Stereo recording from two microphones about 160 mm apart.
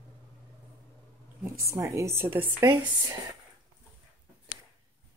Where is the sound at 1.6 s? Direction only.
20° right (ahead or behind).